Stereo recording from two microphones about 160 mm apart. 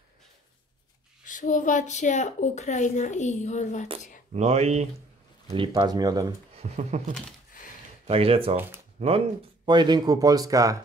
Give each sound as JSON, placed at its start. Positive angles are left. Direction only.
{"t": 1.2, "sound": "a woman's voice", "side_deg": 55}
{"t": 4.3, "sound": "speech", "side_deg": -40}
{"t": 5.5, "sound": "speech", "side_deg": -30}
{"t": 6.6, "sound": "speech", "side_deg": -45}
{"t": 7.6, "sound": "a sound", "side_deg": 55}
{"t": 8.1, "sound": "speech", "side_deg": -35}
{"t": 8.5, "sound": "speech", "side_deg": -15}
{"t": 9.7, "sound": "speech", "side_deg": -25}